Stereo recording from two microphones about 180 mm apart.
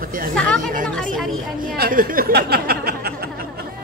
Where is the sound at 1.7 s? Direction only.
55° right (ahead or behind).